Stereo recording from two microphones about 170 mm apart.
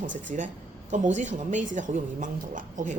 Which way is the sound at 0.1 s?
50° right (ahead or behind).